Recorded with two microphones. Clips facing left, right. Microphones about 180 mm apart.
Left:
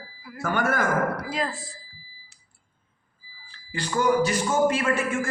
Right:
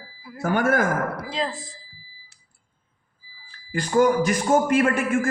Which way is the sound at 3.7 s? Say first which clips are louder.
Right 4 dB; 45° right (ahead or behind).